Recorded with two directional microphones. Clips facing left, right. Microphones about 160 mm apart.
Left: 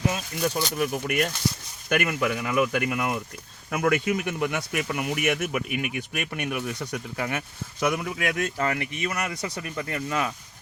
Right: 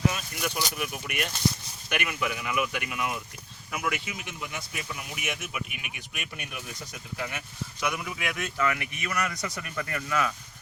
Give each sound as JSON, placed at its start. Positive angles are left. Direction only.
{"t": 0.1, "sound": "speech", "side_deg": 35}